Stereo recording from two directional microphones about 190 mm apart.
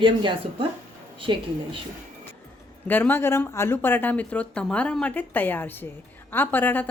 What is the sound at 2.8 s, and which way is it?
Speech, 10° left (ahead or behind).